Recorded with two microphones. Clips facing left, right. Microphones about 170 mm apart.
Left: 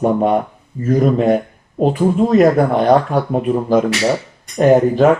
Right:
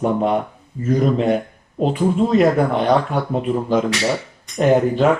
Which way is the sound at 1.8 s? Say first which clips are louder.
Left 3 dB; 45° left (ahead or behind).